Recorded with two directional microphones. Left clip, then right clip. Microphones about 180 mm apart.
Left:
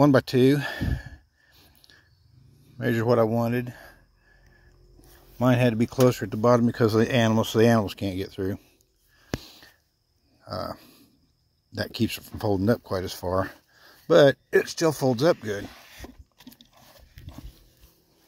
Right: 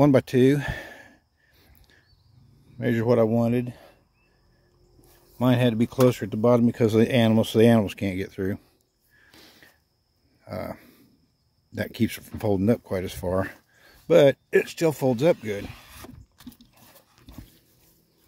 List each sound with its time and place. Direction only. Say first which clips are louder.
0.0 s a sound: even; 15° right (ahead or behind)
2.8 s speech: right 1 dB; 15° right (ahead or behind)
5.4 s speech: even; 10° right (ahead or behind)
7.0 s speech: right 4 dB; 25° right (ahead or behind)
9.4 s a sound: left 4 dB; 20° right (ahead or behind)
10.4 s livestock: left 1 dB; 15° right (ahead or behind)
11.7 s speech: even; 15° right (ahead or behind)